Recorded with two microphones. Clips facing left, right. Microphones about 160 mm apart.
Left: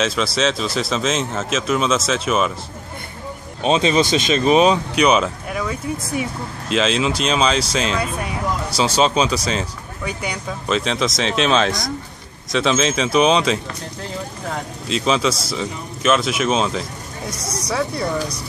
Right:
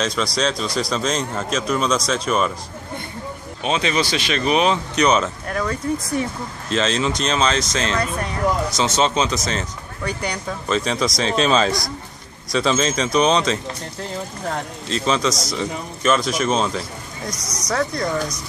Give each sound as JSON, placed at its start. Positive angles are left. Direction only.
{"t": 0.0, "sound": "speech", "side_deg": 5}
{"t": 3.6, "sound": "speech", "side_deg": 25}
{"t": 4.9, "sound": "speech", "side_deg": 10}
{"t": 15.0, "sound": "speech", "side_deg": 5}
{"t": 17.3, "sound": "speech", "side_deg": 30}
{"t": 17.6, "sound": "speech", "side_deg": 10}